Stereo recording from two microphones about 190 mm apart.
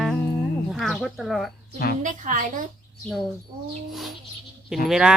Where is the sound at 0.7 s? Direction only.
Centre (ahead or behind).